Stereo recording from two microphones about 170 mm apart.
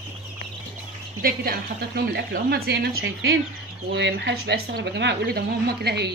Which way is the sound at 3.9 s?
90° right.